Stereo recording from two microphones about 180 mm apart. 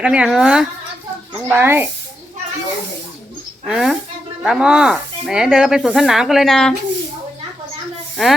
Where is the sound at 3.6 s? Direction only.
5° right (ahead or behind).